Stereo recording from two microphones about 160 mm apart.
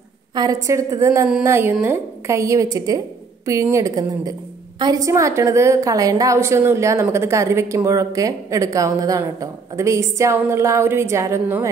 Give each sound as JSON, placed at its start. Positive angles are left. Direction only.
{"t": 0.3, "sound": "a woman's voice", "side_deg": -25}